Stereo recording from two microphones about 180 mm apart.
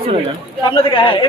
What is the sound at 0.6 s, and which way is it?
Speech, 30° left (ahead or behind).